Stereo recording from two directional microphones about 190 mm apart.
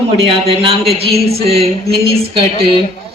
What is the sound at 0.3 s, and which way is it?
A woman's voice, 30° right (ahead or behind).